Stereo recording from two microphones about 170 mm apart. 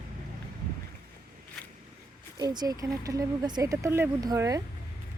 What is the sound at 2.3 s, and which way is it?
Speech, 25° right (ahead or behind).